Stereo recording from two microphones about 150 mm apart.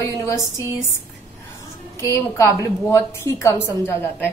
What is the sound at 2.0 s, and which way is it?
A woman's voice, 20° left (ahead or behind).